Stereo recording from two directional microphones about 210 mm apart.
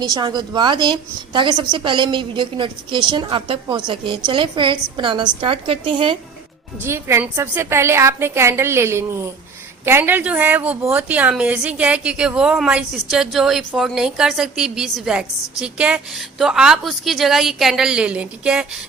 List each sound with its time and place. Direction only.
0.1 s a woman's voice: 20° right (ahead or behind)
6.8 s a woman's voice: 10° right (ahead or behind)